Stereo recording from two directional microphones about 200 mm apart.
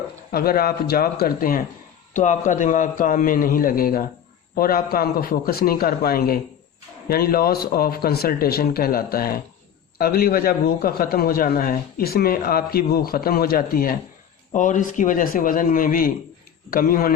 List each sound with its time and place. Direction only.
0.3 s a man's voice: 50° left (ahead or behind)